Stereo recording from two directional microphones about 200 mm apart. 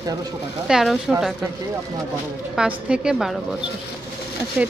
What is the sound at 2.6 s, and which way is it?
Speech, 5° right (ahead or behind).